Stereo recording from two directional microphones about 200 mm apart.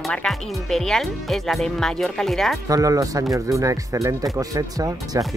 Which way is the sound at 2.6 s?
15° right (ahead or behind).